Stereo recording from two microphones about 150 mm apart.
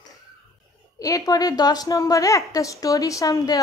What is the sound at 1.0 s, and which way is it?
A woman's voice, 25° left (ahead or behind).